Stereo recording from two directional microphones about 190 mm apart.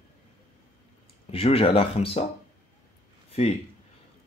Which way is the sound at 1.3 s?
30° left (ahead or behind).